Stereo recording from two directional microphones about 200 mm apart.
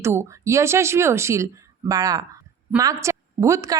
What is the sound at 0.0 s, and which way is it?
A woman's voice, 15° right (ahead or behind).